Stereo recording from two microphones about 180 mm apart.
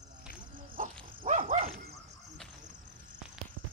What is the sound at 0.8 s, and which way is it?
Dog, 45° right (ahead or behind).